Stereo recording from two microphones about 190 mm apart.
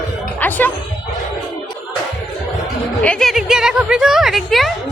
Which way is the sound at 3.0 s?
5° left (ahead or behind).